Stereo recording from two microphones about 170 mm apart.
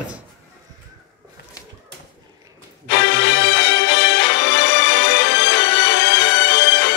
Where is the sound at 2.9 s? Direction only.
90° left.